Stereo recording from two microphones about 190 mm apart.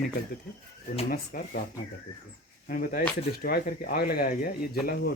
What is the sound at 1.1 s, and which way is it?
Speech, 50° left (ahead or behind).